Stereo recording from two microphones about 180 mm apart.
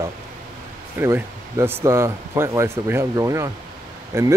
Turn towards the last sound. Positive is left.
turn(degrees=-15)  # may be behind; listen again after turning